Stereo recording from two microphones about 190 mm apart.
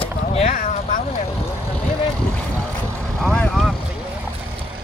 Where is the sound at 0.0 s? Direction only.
30° left (ahead or behind).